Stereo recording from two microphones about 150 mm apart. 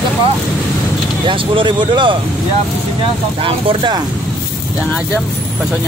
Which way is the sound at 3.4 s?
35° right (ahead or behind).